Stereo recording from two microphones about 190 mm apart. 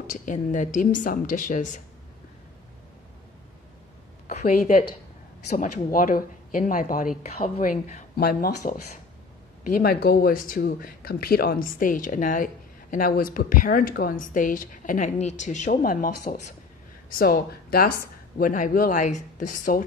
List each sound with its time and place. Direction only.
0.0 s speech: 45° left (ahead or behind)
4.3 s a woman's voice: 40° left (ahead or behind)
9.8 s speech: 55° left (ahead or behind)